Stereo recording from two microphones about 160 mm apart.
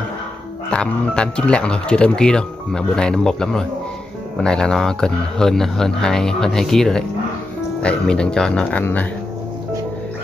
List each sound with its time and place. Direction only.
0.7 s speech: 5° left (ahead or behind)